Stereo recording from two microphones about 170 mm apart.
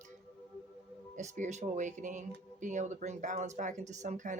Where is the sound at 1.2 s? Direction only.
45° right (ahead or behind).